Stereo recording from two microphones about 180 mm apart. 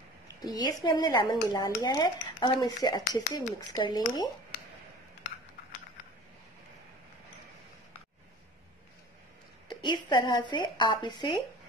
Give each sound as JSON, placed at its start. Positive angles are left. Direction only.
{"t": 0.4, "sound": "speech", "side_deg": 20}
{"t": 9.7, "sound": "a woman's voice", "side_deg": 25}